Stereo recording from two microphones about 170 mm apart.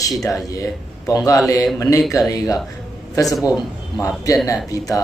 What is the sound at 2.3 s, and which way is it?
Speech, 20° left (ahead or behind).